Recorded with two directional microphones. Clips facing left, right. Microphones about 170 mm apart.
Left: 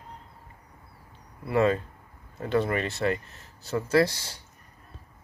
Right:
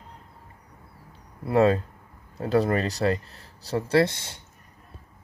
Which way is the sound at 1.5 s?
35° right (ahead or behind).